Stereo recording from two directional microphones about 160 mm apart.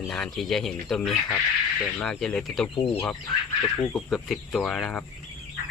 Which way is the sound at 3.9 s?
Centre (ahead or behind).